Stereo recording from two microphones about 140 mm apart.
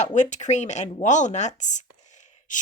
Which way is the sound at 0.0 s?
60° left (ahead or behind).